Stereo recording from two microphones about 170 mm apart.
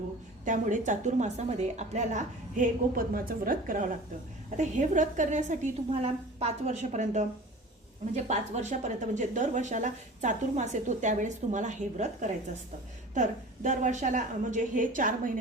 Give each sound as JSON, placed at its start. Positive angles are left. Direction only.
{"t": 0.4, "sound": "speech", "side_deg": -50}